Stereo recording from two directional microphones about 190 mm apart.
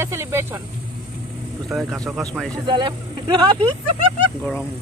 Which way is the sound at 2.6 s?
25° right (ahead or behind).